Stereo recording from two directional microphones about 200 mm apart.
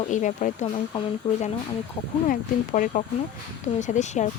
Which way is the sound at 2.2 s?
40° left (ahead or behind).